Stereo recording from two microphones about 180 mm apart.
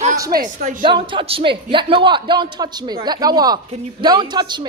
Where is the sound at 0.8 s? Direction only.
25° right (ahead or behind).